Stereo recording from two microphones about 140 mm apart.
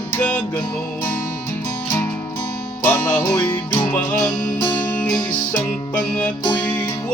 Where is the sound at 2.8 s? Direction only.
15° left (ahead or behind).